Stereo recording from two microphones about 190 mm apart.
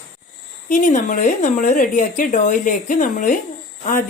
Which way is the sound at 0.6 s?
45° left (ahead or behind).